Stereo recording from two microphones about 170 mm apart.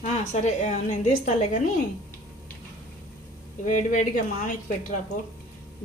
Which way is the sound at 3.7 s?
50° left (ahead or behind).